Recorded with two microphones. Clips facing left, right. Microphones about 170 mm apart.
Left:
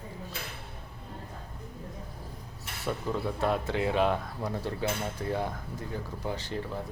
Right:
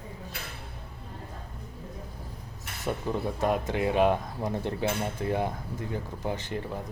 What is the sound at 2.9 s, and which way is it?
Speech, 15° right (ahead or behind).